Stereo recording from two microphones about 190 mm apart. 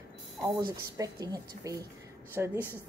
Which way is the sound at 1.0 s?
20° right (ahead or behind).